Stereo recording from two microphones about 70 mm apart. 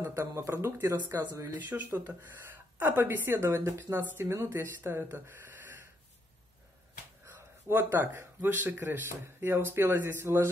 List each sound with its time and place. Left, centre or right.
0.0 s a woman's voice: right
7.2 s a woman's voice: right